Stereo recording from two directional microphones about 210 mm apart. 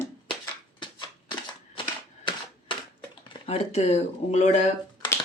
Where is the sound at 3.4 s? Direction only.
30° left (ahead or behind).